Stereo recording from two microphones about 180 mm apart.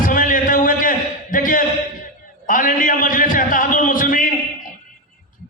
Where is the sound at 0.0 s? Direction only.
50° left (ahead or behind).